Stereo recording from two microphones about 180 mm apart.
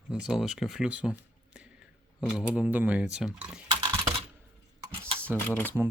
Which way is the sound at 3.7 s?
20° right (ahead or behind).